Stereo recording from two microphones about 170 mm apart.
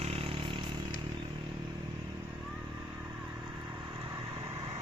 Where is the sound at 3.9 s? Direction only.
30° right (ahead or behind).